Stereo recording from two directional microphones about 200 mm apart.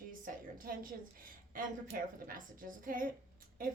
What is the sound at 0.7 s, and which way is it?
A woman's voice, 45° right (ahead or behind).